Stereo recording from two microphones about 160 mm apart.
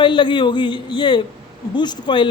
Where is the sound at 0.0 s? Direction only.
30° left (ahead or behind).